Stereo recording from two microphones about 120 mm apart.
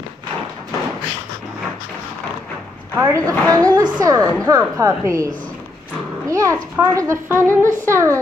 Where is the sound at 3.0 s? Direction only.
30° right (ahead or behind).